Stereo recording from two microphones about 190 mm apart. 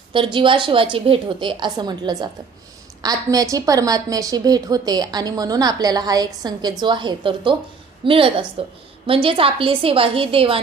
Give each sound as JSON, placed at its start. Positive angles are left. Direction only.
{"t": 0.1, "sound": "a woman's voice", "side_deg": -25}